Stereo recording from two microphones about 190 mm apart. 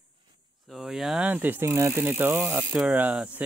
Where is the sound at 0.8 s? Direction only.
Centre (ahead or behind).